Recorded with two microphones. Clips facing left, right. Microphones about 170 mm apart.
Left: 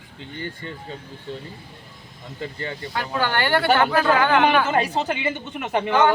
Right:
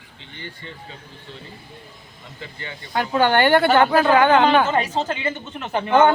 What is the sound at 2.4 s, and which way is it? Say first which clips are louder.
Speech: left 6 dB; 40° left (ahead or behind).